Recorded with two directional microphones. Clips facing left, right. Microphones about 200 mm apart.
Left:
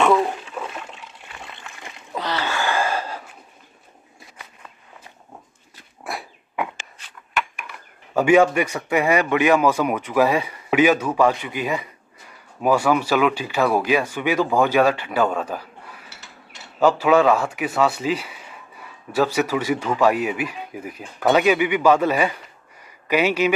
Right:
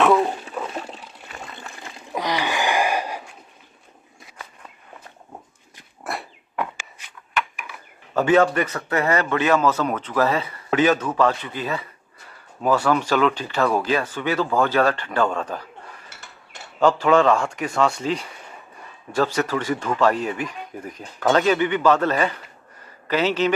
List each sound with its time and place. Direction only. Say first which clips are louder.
0.5 s water: right 2 dB; 35° right (ahead or behind)
2.1 s gasp: right 1 dB; 15° right (ahead or behind)
6.0 s dog: right 1 dB; 5° left (ahead or behind)
8.1 s a man's voice: left 2 dB; 10° left (ahead or behind)
16.1 s a sound: even; 50° right (ahead or behind)
16.8 s a man's voice: left 1 dB; 5° left (ahead or behind)